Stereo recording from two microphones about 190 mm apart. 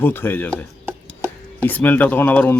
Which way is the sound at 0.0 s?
10° left (ahead or behind).